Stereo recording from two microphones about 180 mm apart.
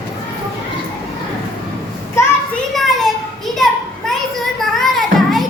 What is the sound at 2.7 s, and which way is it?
Children playing, centre (ahead or behind).